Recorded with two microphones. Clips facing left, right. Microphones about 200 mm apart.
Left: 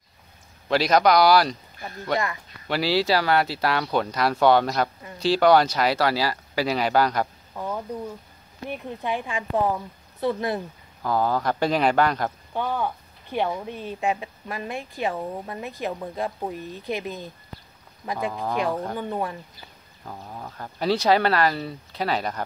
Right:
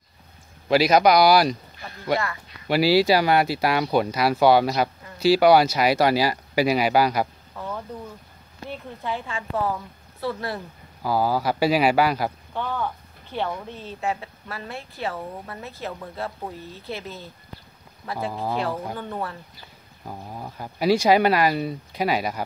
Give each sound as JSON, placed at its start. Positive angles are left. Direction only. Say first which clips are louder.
{"t": 0.7, "sound": "speech", "louder": "right 2 dB", "side_deg": -10}
{"t": 2.7, "sound": "speech", "louder": "right 4 dB", "side_deg": -10}
{"t": 7.5, "sound": "a sound", "louder": "left 2 dB", "side_deg": 15}
{"t": 8.6, "sound": "speech", "louder": "left 2 dB", "side_deg": 15}
{"t": 11.0, "sound": "speech", "louder": "right 1 dB", "side_deg": -5}
{"t": 12.5, "sound": "speech", "louder": "left 4 dB", "side_deg": 15}
{"t": 18.3, "sound": "speech", "louder": "right 1 dB", "side_deg": -15}
{"t": 18.9, "sound": "speech", "louder": "left 3 dB", "side_deg": 15}
{"t": 20.1, "sound": "speech", "louder": "right 2 dB", "side_deg": -15}